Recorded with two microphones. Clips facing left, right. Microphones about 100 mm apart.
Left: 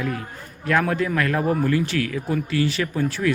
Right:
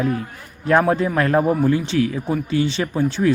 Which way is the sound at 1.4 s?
15° right (ahead or behind).